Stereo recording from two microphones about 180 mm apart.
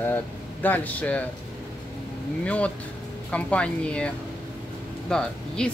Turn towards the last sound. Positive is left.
turn(degrees=5)  # may be behind; listen again after turning